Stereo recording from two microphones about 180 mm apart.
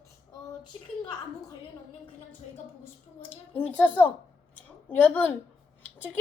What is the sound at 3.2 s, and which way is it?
A woman's voice, 10° left (ahead or behind).